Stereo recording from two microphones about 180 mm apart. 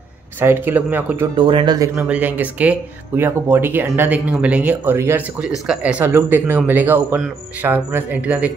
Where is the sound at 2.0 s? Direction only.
10° right (ahead or behind).